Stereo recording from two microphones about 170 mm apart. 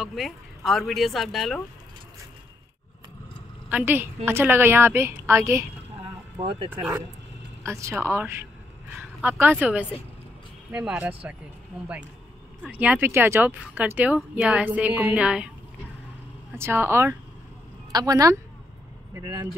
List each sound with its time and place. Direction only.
0.0 s speech: centre (ahead or behind)
3.6 s speech: 10° right (ahead or behind)
6.4 s a woman's voice: 30° right (ahead or behind)
7.6 s a woman's voice: 15° right (ahead or behind)
16.5 s a woman's voice: 15° right (ahead or behind)